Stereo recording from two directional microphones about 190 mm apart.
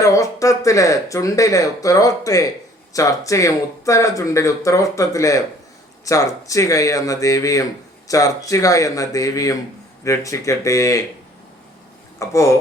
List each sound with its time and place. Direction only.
0.0 s speech: 15° left (ahead or behind)
12.2 s speech: 15° left (ahead or behind)